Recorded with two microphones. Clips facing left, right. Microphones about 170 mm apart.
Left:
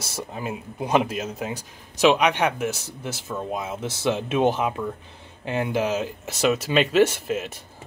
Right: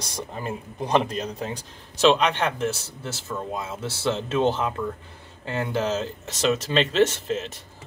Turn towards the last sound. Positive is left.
turn(degrees=10)  # may be behind; listen again after turning